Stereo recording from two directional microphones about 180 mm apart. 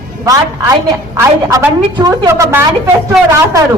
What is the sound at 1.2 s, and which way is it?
A woman's voice, 15° right (ahead or behind).